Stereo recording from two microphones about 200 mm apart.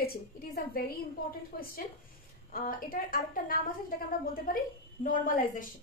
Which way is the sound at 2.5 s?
45° left (ahead or behind).